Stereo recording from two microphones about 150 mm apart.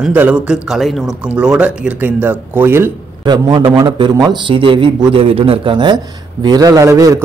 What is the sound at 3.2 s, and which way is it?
A man's voice, 30° right (ahead or behind).